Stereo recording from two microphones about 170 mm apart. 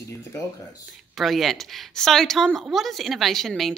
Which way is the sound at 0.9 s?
Centre (ahead or behind).